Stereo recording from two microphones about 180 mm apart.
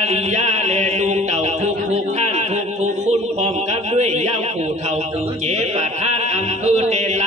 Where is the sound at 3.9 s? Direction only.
35° right (ahead or behind).